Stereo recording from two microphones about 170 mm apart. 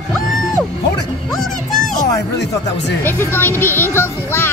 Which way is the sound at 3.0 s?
15° left (ahead or behind).